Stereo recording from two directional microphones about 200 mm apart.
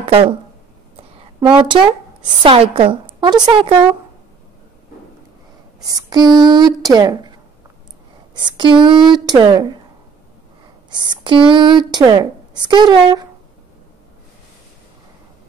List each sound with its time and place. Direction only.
0.0 s a sound: 30° right (ahead or behind)
1.4 s a woman's voice: 25° right (ahead or behind)
5.8 s a woman's voice: 20° right (ahead or behind)
8.4 s a woman's voice: 20° right (ahead or behind)
10.9 s a woman's voice: 20° right (ahead or behind)